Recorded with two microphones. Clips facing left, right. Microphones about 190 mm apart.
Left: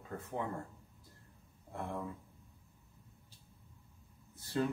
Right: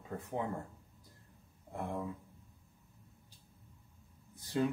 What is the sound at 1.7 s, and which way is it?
Speech, 15° right (ahead or behind).